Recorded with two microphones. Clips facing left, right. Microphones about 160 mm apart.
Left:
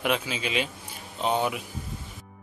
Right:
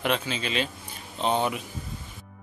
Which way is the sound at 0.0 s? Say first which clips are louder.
Even; 10° left (ahead or behind).